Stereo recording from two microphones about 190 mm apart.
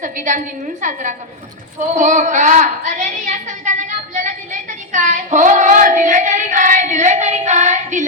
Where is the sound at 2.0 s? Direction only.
40° right (ahead or behind).